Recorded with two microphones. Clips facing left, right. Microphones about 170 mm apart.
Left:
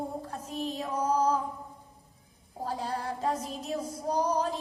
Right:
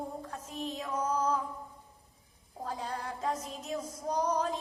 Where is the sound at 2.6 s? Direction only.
35° left (ahead or behind).